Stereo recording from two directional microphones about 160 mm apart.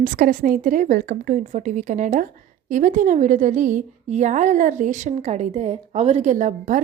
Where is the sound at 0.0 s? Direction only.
55° right (ahead or behind).